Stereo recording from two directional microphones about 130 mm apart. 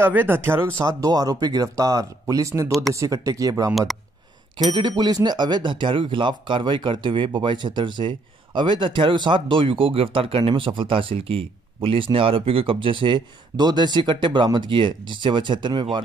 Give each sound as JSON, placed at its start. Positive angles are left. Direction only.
{"t": 0.0, "sound": "speech", "side_deg": -15}
{"t": 0.8, "sound": "speech", "side_deg": -30}
{"t": 3.7, "sound": "speech", "side_deg": 0}
{"t": 4.7, "sound": "speech", "side_deg": -35}